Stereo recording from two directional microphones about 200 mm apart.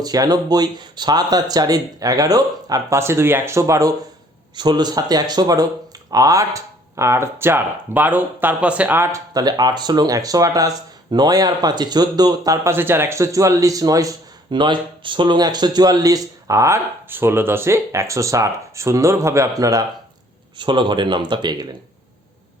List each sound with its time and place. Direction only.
0.0 s speech: 20° right (ahead or behind)